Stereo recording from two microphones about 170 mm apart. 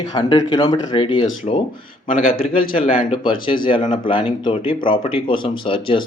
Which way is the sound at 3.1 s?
30° left (ahead or behind).